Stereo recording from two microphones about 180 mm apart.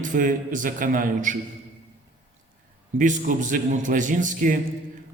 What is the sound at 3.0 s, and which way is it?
A man's voice, 45° right (ahead or behind).